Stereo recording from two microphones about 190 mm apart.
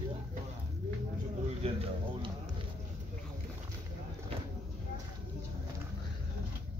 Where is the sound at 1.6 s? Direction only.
30° right (ahead or behind).